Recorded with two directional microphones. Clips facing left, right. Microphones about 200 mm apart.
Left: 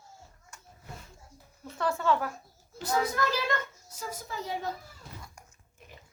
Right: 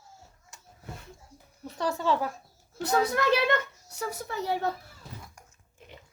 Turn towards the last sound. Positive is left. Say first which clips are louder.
# right 5 dB
turn(degrees=-65)  # may be behind; listen again after turning